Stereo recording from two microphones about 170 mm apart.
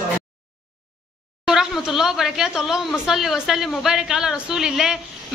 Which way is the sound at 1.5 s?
5° right (ahead or behind).